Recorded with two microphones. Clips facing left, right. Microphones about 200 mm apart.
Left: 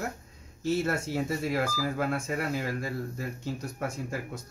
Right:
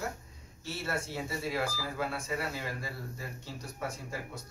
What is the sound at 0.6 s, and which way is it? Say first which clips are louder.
Speech: left 8 dB; 45° left (ahead or behind).